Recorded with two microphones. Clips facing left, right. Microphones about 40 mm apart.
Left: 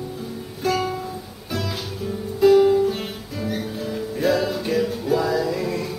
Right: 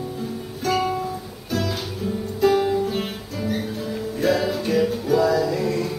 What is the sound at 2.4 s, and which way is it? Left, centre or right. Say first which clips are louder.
Music: left 5 dB; centre.